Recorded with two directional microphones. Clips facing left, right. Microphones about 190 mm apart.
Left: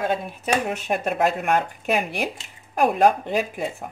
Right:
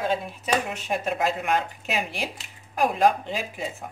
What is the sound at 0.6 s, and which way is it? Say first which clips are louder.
A woman's voice: left 3 dB; 55° left (ahead or behind).